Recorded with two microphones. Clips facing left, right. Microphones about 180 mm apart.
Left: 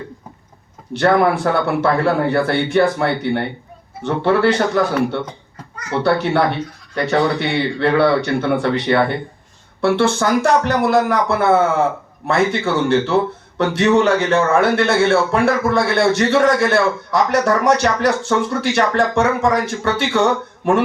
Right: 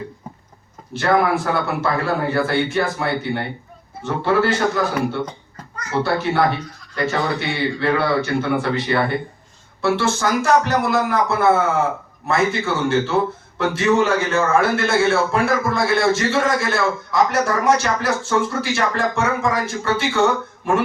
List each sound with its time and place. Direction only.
0.9 s a man's voice: 60° left (ahead or behind)